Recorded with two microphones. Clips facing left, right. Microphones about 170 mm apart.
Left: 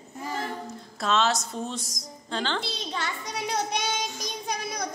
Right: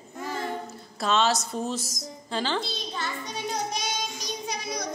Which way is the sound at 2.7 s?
80° left.